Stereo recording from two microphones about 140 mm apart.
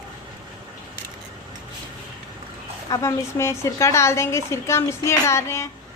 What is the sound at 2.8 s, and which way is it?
A woman's voice, 20° left (ahead or behind).